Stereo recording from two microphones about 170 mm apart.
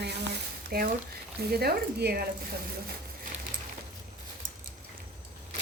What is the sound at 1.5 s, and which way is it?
Speech, 65° right (ahead or behind).